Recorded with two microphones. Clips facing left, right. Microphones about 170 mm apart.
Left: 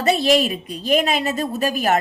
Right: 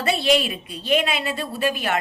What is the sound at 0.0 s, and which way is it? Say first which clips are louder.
A woman's voice: left 3 dB; 40° left (ahead or behind).